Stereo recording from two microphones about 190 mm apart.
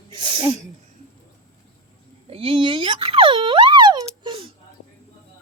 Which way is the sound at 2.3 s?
30° right (ahead or behind).